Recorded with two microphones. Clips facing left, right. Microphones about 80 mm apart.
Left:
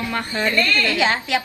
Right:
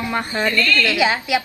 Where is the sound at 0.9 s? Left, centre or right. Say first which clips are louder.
Right 1 dB; centre.